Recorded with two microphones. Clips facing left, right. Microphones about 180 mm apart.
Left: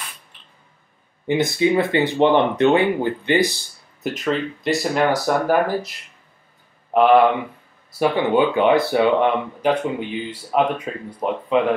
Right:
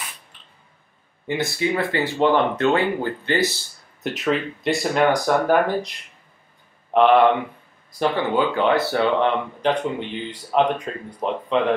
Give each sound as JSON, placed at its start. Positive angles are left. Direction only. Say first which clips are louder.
{"t": 1.2, "sound": "speech", "louder": "left 5 dB", "side_deg": 20}
{"t": 4.0, "sound": "speech", "louder": "even", "side_deg": 0}